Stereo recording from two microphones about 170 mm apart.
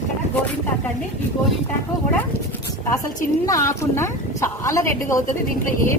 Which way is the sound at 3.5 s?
15° left (ahead or behind).